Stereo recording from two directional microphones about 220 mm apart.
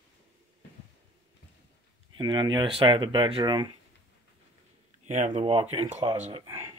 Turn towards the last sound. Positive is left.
turn(degrees=-25)  # may be behind; listen again after turning